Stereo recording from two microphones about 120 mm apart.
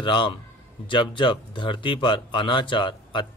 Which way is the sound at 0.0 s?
45° left (ahead or behind).